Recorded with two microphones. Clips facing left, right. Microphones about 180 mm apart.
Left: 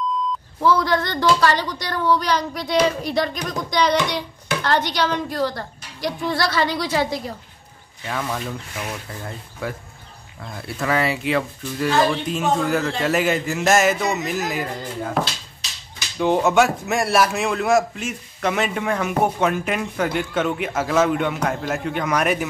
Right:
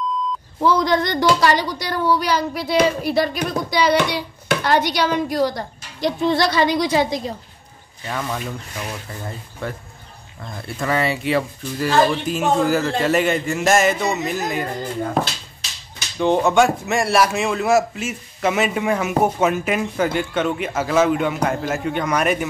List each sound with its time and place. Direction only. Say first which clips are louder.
0.6 s a woman's voice: right 1 dB; 15° right (ahead or behind)
5.9 s a woman's voice: right 5 dB; 25° right (ahead or behind)
8.1 s speech: even; centre (ahead or behind)
9.6 s speech: even; 5° left (ahead or behind)
16.2 s speech: right 1 dB; 5° left (ahead or behind)